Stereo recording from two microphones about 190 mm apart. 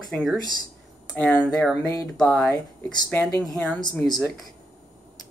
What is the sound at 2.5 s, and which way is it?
Speech, 15° left (ahead or behind).